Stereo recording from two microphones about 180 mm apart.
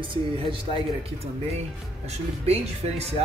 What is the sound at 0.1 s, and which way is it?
Speech, 30° right (ahead or behind).